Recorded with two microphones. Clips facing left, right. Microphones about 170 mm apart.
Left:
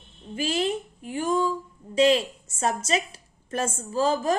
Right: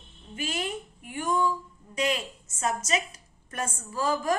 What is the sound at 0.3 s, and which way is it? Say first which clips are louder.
A woman's voice: left 7 dB; 30° left (ahead or behind).